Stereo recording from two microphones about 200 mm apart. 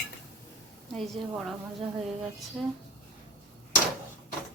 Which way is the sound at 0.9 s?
Centre (ahead or behind).